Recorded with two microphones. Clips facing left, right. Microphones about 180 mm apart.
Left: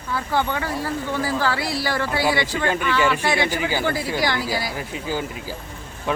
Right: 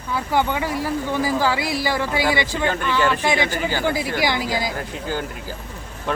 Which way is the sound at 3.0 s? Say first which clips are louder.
Right 1 dB; 10° left (ahead or behind).